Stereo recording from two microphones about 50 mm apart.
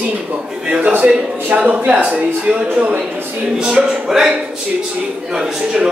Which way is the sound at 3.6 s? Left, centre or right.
Centre.